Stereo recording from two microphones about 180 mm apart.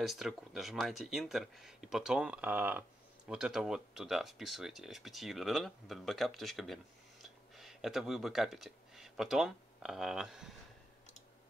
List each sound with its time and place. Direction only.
0.0 s speech: centre (ahead or behind)